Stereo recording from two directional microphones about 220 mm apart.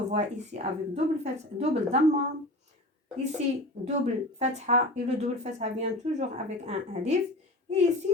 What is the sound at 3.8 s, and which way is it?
A woman's voice, 30° right (ahead or behind).